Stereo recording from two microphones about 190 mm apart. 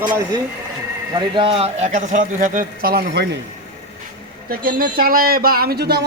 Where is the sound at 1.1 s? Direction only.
25° right (ahead or behind); by 3.2 s 55° right (ahead or behind).